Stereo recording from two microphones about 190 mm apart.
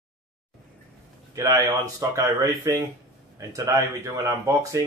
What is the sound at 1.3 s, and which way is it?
Speech, 20° right (ahead or behind).